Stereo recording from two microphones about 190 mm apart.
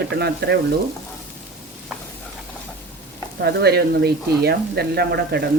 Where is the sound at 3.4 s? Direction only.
60° right (ahead or behind).